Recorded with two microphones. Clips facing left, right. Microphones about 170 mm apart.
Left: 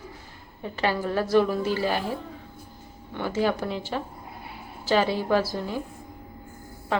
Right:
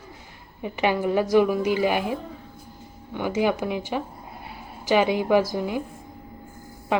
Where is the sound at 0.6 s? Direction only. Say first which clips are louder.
Right 3 dB; 15° right (ahead or behind).